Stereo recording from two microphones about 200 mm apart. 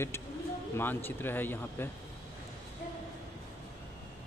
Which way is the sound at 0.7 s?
10° left (ahead or behind).